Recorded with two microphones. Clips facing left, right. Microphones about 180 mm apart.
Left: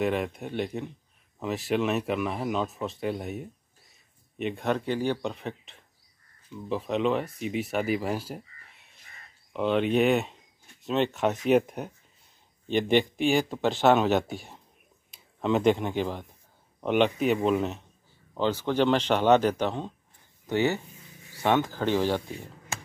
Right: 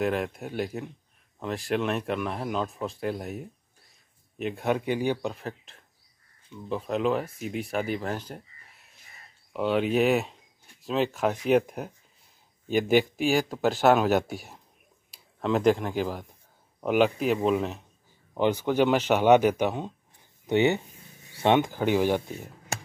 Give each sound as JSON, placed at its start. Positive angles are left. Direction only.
{"t": 0.0, "sound": "speech", "side_deg": 0}
{"t": 15.4, "sound": "speech", "side_deg": 0}
{"t": 18.3, "sound": "speech", "side_deg": -15}